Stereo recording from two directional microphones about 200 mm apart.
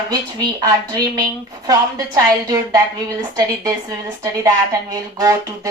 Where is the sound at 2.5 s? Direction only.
15° right (ahead or behind).